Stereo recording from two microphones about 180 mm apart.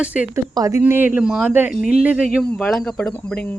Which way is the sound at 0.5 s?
20° right (ahead or behind).